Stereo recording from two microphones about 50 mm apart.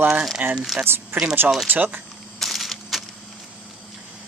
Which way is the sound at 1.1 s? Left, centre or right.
Right.